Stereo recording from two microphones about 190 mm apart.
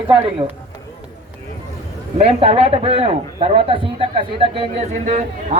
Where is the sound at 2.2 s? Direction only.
30° right (ahead or behind).